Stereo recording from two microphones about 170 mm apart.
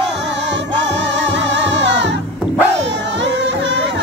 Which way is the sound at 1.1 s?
90° right.